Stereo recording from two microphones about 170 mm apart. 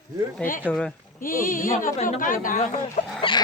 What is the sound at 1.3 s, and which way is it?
Speech, 55° left (ahead or behind).